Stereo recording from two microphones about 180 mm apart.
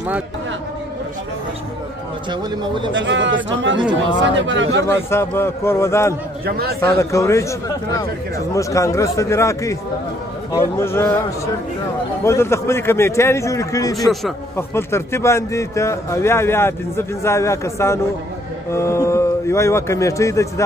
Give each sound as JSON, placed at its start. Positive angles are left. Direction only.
{"t": 2.9, "sound": "speech", "side_deg": -90}
{"t": 4.8, "sound": "a man's voice", "side_deg": 15}
{"t": 6.4, "sound": "speech", "side_deg": -60}
{"t": 6.8, "sound": "a man's voice", "side_deg": 15}
{"t": 12.3, "sound": "a man's voice", "side_deg": 15}